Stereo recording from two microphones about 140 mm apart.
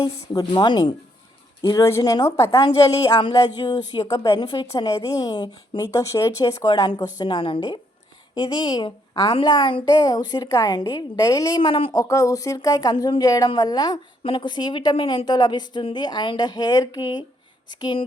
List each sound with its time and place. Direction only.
0.0 s a woman's voice: 30° left (ahead or behind)
12.0 s a woman's voice: 25° left (ahead or behind)